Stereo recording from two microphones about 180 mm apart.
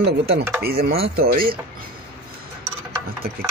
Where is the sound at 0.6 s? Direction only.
60° right (ahead or behind).